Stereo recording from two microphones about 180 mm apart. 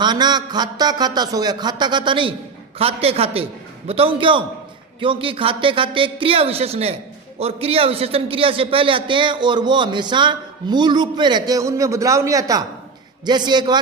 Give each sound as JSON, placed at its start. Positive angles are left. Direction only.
{"t": 0.0, "sound": "a man's voice", "side_deg": -25}